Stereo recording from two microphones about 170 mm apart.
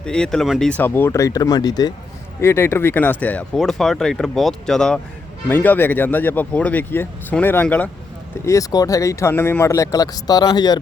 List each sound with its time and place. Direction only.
0.0 s speech: 5° left (ahead or behind)
0.7 s speech: 10° left (ahead or behind)
8.4 s speech: 20° left (ahead or behind)